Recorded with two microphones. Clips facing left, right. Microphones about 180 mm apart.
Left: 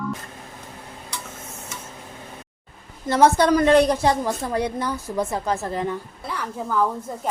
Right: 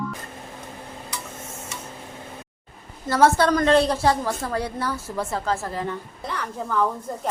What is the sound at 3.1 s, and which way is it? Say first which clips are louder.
A woman's voice: left 2 dB; 20° left (ahead or behind).